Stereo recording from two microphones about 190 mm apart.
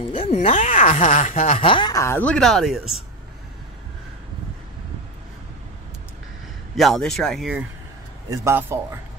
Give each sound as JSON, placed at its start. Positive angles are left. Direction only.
{"t": 0.0, "sound": "speech", "side_deg": 30}
{"t": 6.8, "sound": "speech", "side_deg": 0}
{"t": 8.3, "sound": "a man's voice", "side_deg": -15}